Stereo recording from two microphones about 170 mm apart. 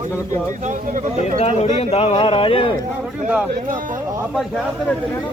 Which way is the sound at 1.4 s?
40° left (ahead or behind).